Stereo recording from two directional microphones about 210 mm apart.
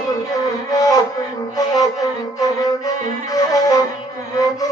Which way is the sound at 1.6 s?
15° left (ahead or behind).